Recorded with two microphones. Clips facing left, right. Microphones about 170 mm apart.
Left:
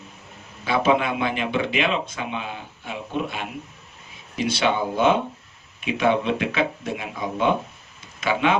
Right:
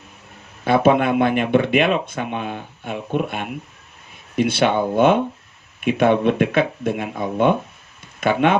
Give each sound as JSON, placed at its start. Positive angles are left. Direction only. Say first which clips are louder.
{"t": 0.6, "sound": "speech", "louder": "right 5 dB", "side_deg": -55}